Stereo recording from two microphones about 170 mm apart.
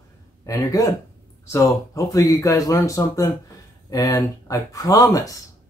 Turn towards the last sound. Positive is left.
turn(degrees=20)  # may be behind; listen again after turning